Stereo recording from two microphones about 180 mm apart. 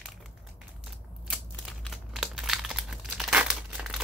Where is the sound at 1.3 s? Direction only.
Centre (ahead or behind).